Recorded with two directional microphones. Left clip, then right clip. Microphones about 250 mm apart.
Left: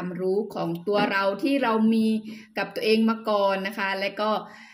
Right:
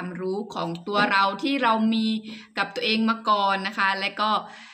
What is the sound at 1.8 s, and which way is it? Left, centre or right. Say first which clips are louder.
Speech: left 2 dB; right.